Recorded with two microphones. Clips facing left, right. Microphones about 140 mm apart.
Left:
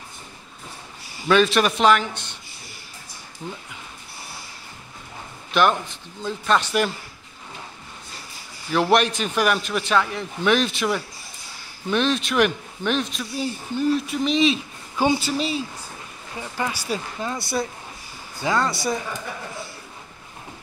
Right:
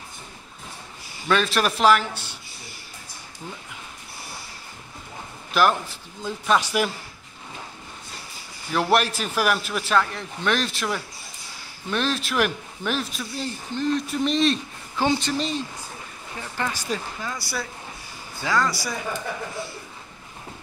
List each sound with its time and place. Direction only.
1.2 s a man's voice: centre (ahead or behind)
5.5 s speech: 5° right (ahead or behind)
8.7 s a man's voice: centre (ahead or behind)
13.4 s a man's voice: 10° left (ahead or behind)
17.2 s speech: 25° left (ahead or behind)